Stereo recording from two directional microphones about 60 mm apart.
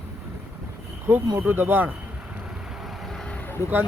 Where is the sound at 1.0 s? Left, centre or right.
Right.